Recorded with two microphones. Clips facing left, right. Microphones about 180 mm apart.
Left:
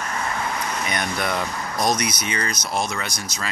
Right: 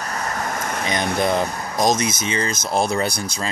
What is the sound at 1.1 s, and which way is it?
Speech, 25° right (ahead or behind).